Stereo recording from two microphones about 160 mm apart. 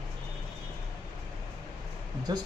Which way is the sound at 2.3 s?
25° right (ahead or behind).